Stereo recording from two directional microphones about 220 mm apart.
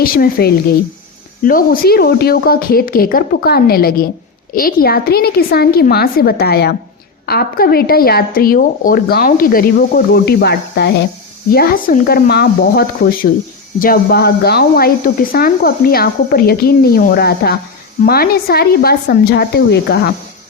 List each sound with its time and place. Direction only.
0.0 s speech: 40° left (ahead or behind)